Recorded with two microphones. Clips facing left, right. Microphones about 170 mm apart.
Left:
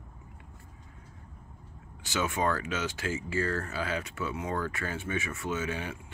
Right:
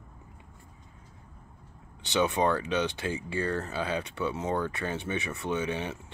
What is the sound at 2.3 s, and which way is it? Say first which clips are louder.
Speech: right 4 dB; 25° right (ahead or behind).